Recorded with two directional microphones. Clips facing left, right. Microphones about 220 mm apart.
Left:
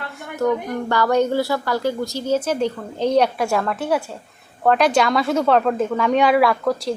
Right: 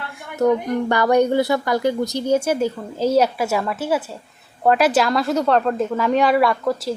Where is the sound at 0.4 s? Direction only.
15° right (ahead or behind).